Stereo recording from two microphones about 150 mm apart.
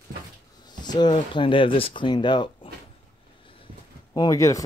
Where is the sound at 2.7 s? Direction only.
40° left (ahead or behind).